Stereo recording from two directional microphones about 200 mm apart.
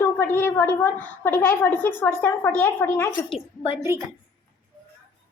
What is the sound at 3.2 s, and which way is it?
Speech, 30° left (ahead or behind).